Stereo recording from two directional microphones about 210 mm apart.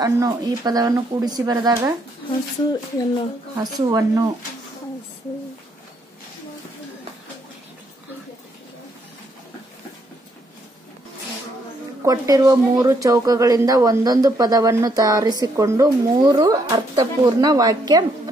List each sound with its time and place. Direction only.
0.0 s a woman's voice: 15° right (ahead or behind)
3.5 s speech: 20° right (ahead or behind)
12.0 s a woman's voice: 15° right (ahead or behind)